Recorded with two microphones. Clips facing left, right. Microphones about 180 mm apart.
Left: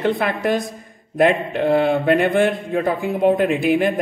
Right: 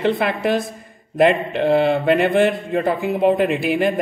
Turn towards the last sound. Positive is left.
turn(degrees=0)  # may be behind; listen again after turning